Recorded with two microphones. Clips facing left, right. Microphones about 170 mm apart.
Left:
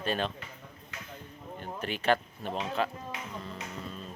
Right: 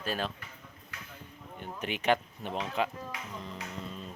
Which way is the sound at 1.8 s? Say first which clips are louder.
Even; 15° right (ahead or behind).